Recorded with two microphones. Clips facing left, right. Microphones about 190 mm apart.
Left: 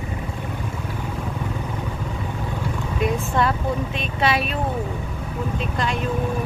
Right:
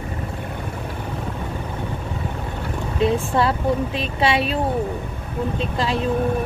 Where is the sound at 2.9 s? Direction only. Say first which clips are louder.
Right 3 dB; 30° right (ahead or behind).